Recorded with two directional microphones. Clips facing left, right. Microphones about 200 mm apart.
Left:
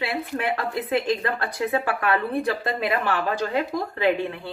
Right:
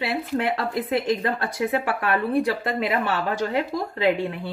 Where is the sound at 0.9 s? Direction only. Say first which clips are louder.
Even; 20° right (ahead or behind).